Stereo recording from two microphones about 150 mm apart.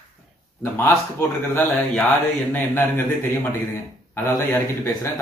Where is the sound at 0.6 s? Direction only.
15° left (ahead or behind).